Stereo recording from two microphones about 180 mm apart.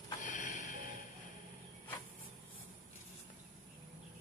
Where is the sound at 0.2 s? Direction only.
45° left (ahead or behind).